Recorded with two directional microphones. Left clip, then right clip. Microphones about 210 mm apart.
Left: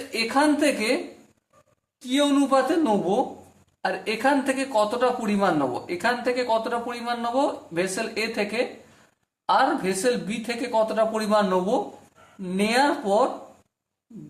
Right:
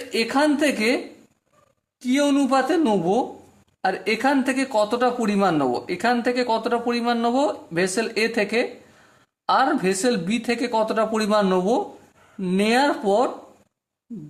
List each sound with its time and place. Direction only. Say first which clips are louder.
0.1 s speech: right 1 dB; 45° right (ahead or behind)
2.0 s speech: right 2 dB; 40° right (ahead or behind)